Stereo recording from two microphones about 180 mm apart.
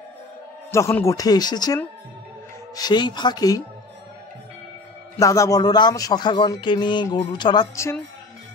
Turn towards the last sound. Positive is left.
turn(degrees=20)  # may be behind; listen again after turning